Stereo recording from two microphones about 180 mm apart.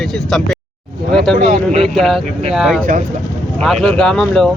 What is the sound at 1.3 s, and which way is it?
Speech, 40° right (ahead or behind).